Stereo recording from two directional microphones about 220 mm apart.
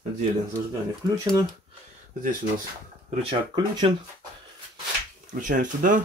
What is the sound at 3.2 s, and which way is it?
Speech, 20° right (ahead or behind).